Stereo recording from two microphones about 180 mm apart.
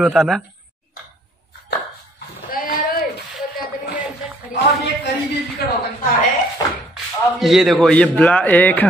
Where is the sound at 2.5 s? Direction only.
50° left (ahead or behind).